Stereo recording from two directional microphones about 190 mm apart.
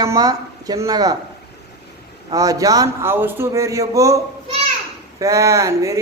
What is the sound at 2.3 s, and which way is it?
A man's voice, 20° right (ahead or behind).